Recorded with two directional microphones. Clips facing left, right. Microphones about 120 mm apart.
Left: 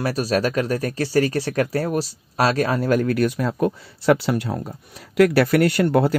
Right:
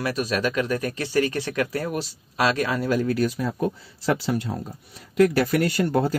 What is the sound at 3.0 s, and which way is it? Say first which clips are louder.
Speech: left 3 dB; 60° left (ahead or behind).